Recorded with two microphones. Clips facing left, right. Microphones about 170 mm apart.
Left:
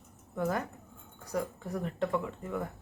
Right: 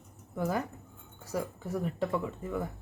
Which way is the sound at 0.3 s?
5° right (ahead or behind).